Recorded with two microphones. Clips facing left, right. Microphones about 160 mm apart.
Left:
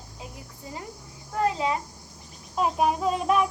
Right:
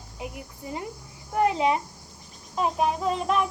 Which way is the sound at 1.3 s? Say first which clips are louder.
Right 3 dB; 20° right (ahead or behind).